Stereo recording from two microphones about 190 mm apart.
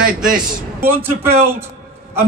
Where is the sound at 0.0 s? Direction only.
45° right (ahead or behind).